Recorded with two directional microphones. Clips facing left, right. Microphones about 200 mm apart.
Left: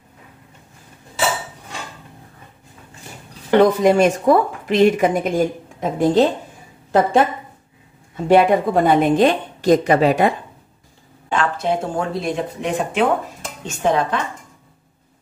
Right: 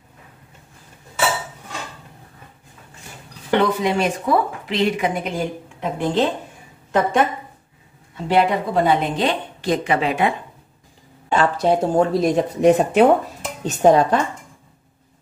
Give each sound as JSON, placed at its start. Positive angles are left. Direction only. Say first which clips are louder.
{"t": 3.5, "sound": "speech", "louder": "left 6 dB", "side_deg": 45}
{"t": 8.3, "sound": "speech", "louder": "left 5 dB", "side_deg": 50}
{"t": 11.3, "sound": "speech", "louder": "right 3 dB", "side_deg": -35}